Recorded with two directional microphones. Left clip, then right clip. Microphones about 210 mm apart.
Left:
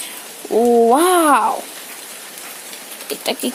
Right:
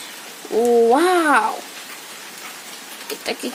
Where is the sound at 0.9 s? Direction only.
25° left (ahead or behind).